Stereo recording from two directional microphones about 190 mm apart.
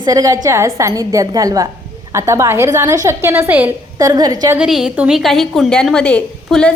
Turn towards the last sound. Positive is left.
turn(degrees=5)  # may be behind; listen again after turning